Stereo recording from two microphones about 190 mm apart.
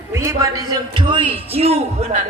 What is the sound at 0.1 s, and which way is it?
A man's voice, 15° right (ahead or behind).